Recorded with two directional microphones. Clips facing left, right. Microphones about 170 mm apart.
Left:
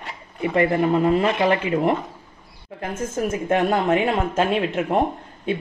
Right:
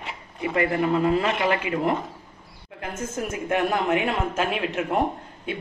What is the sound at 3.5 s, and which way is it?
Speech, 30° left (ahead or behind).